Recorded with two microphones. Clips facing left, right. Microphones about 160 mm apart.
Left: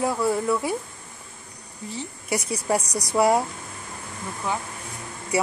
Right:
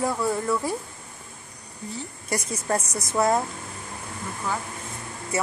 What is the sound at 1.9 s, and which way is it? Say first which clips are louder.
Speech: left 2 dB; 10° left (ahead or behind).